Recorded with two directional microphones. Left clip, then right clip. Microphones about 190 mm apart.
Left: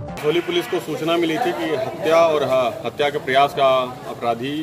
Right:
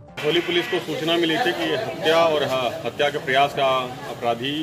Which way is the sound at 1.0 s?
15° left (ahead or behind).